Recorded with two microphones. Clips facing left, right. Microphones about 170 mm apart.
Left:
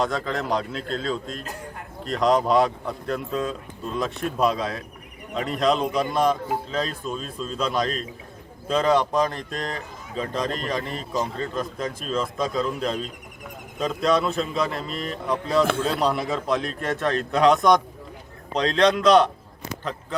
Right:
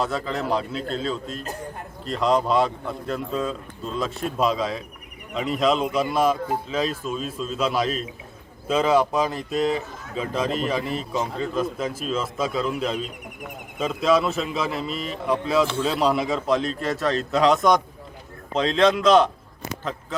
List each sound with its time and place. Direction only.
0.0 s speech: 5° right (ahead or behind)
15.6 s a man's voice: 55° left (ahead or behind)
16.0 s speech: centre (ahead or behind)
18.8 s speech: 5° right (ahead or behind)